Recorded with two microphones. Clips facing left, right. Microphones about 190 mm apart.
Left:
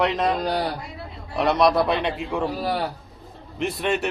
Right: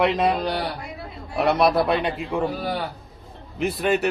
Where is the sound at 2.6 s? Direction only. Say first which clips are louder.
Left 2 dB; 40° left (ahead or behind).